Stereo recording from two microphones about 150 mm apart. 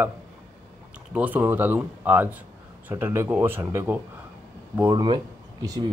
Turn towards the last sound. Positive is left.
turn(degrees=-25)  # may be behind; listen again after turning